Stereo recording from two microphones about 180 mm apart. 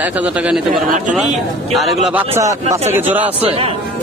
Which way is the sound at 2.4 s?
15° right (ahead or behind).